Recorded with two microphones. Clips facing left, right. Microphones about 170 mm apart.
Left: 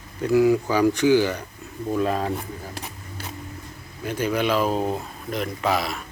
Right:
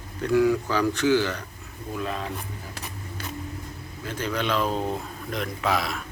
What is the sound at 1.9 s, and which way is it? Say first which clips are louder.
Speech: left 7 dB; 40° left (ahead or behind).